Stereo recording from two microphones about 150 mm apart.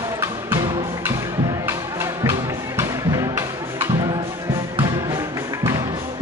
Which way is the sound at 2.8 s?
20° right (ahead or behind).